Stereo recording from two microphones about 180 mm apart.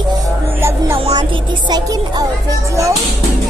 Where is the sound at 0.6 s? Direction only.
15° right (ahead or behind).